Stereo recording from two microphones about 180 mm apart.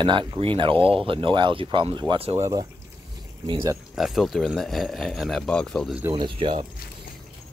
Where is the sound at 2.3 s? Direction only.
15° right (ahead or behind).